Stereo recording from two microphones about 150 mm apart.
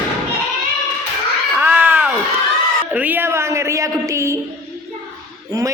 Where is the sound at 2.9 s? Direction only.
10° right (ahead or behind).